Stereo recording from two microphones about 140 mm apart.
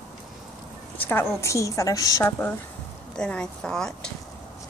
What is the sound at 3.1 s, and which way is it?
Speech, 5° left (ahead or behind).